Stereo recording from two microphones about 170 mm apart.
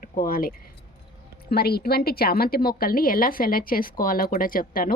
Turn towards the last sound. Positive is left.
turn(degrees=55)  # may be behind; listen again after turning